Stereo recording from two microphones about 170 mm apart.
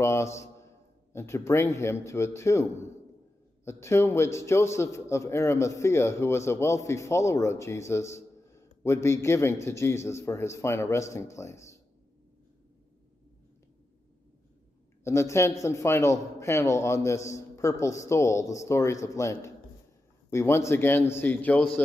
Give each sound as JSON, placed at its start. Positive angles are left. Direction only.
{"t": 0.0, "sound": "a man's voice", "side_deg": 15}
{"t": 15.0, "sound": "a man's voice", "side_deg": 15}